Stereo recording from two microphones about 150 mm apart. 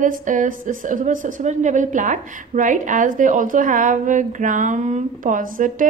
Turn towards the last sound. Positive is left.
turn(degrees=-65)  # may be behind; listen again after turning